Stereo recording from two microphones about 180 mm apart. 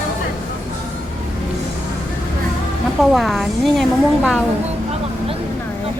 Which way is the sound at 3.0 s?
Centre (ahead or behind).